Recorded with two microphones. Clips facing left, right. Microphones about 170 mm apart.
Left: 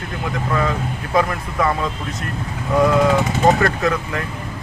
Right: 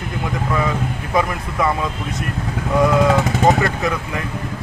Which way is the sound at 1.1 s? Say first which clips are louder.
Left 1 dB; 10° right (ahead or behind).